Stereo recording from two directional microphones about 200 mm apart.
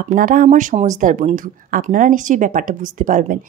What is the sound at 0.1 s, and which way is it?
Speech, 40° right (ahead or behind).